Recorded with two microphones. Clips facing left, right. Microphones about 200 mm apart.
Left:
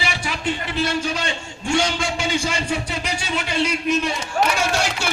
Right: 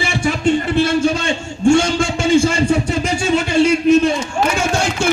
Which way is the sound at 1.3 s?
50° right (ahead or behind).